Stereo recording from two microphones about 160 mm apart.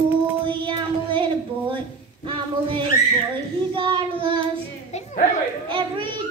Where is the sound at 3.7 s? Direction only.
30° right (ahead or behind).